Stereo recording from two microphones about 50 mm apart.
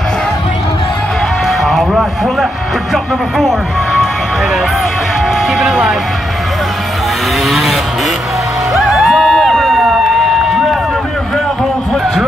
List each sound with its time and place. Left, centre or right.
1.6 s music: centre
2.9 s speech: centre
5.5 s speech: centre
7.4 s speech: centre
8.7 s a sound: centre
10.5 s run: centre